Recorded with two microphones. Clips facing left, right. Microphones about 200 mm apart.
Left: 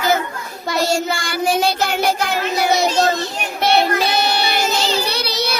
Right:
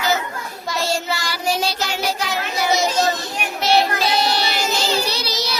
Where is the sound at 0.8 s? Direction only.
45° left (ahead or behind).